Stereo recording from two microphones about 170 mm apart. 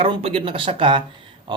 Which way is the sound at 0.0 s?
35° right (ahead or behind).